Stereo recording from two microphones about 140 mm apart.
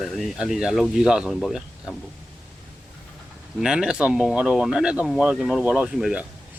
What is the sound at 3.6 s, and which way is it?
Speech, 5° right (ahead or behind).